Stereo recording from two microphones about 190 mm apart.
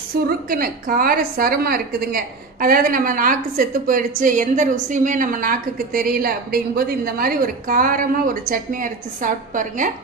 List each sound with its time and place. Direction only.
0.1 s a woman's voice: 50° right (ahead or behind)